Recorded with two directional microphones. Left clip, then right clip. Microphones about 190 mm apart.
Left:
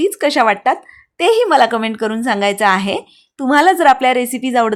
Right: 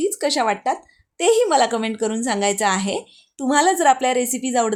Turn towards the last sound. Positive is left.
turn(degrees=15)  # may be behind; listen again after turning